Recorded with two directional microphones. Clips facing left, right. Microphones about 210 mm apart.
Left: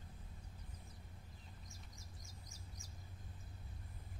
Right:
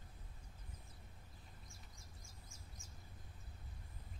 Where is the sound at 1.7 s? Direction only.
40° left (ahead or behind).